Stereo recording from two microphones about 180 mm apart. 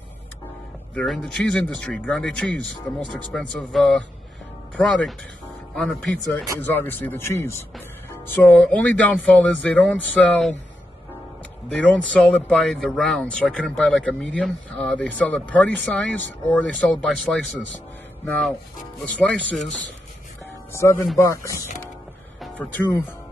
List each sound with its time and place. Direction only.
0.9 s speech: centre (ahead or behind)
11.7 s speech: 10° left (ahead or behind)
20.7 s speech: 15° left (ahead or behind)